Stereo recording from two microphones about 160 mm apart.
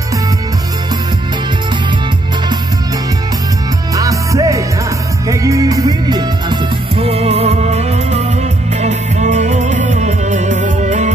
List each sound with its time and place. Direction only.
3.9 s music: 20° right (ahead or behind); by 11.1 s 50° right (ahead or behind)